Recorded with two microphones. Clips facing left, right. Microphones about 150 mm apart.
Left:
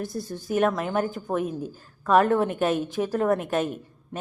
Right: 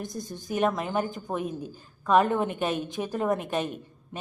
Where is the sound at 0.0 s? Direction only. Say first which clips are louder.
Left 4 dB; 20° right (ahead or behind).